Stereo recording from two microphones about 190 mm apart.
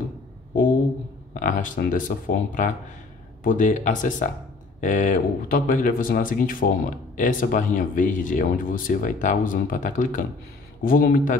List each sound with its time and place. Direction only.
1.3 s speech: 45° left (ahead or behind)